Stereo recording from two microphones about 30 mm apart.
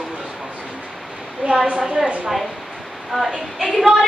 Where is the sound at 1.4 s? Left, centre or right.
Right.